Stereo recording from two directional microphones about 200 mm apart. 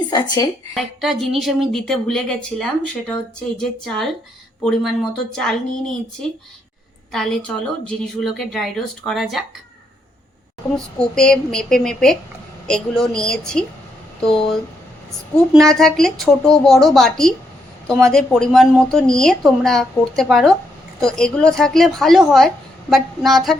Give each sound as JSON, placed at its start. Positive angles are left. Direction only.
{"t": 0.1, "sound": "speech", "side_deg": 20}
{"t": 0.8, "sound": "a woman's voice", "side_deg": 0}
{"t": 10.8, "sound": "a woman's voice", "side_deg": 5}